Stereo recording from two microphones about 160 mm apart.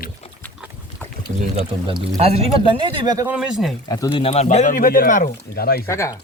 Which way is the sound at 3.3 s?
5° right (ahead or behind).